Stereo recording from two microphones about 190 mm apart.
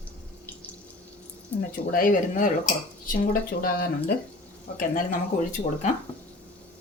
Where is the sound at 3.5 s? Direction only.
55° left (ahead or behind).